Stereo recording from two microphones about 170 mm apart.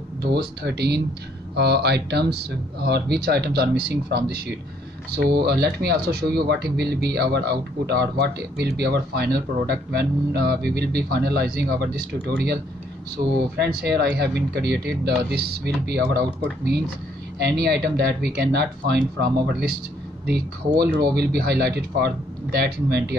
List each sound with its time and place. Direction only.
0.2 s speech: 70° right (ahead or behind)
13.1 s speech: 70° right (ahead or behind)
17.4 s speech: 70° right (ahead or behind)
20.8 s speech: 70° right (ahead or behind)